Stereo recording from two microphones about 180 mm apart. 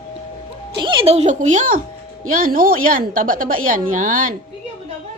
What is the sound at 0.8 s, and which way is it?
A woman's voice, 30° right (ahead or behind).